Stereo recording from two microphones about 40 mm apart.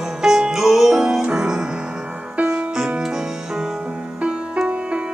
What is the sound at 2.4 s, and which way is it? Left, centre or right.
Music, right.